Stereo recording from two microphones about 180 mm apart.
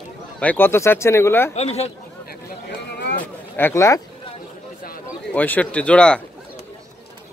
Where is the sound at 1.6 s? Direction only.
35° left (ahead or behind).